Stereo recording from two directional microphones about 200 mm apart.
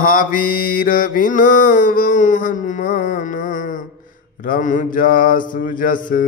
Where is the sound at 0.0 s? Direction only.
45° left (ahead or behind).